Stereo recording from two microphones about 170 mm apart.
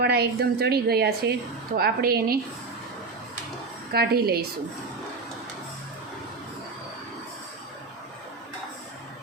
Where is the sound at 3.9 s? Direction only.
65° right (ahead or behind).